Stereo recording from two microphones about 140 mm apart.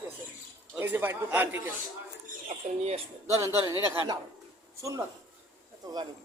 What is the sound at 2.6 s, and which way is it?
Speech, 50° right (ahead or behind).